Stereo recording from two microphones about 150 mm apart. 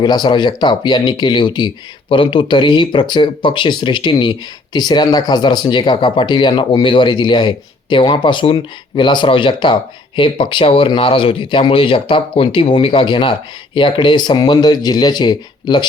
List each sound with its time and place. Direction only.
0.0 s speech: 30° left (ahead or behind)